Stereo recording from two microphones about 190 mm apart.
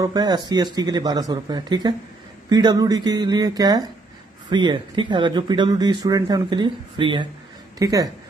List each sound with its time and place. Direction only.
0.0 s speech: 20° right (ahead or behind)